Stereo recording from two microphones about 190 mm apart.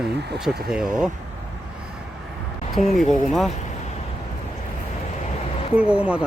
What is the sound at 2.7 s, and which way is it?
Speech, centre (ahead or behind).